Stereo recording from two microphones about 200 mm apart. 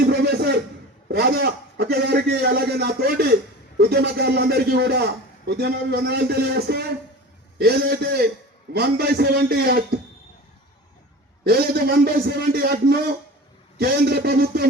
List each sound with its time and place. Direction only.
0.0 s a sound: 55° right (ahead or behind)
1.0 s a man's voice: 50° right (ahead or behind)
11.4 s a man's voice: 50° right (ahead or behind)